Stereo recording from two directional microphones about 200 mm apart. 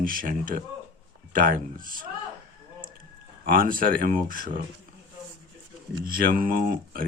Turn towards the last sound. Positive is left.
turn(degrees=-45)  # may be behind; listen again after turning